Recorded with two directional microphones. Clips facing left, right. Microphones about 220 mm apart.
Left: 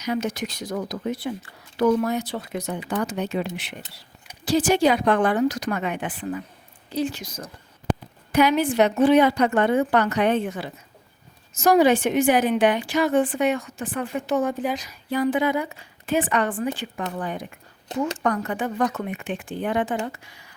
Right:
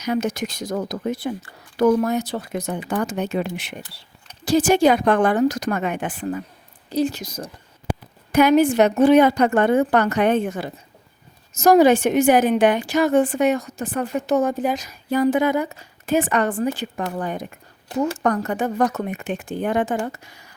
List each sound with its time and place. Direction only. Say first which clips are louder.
0.0 s a woman's voice: right 3 dB; 45° right (ahead or behind)
7.9 s a sound: left 2 dB; 10° right (ahead or behind)
8.3 s a woman's voice: right 5 dB; 45° right (ahead or behind)